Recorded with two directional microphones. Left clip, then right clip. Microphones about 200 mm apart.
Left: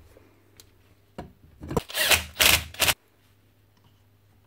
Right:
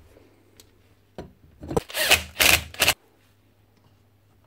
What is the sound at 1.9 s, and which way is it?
Rub, 15° right (ahead or behind).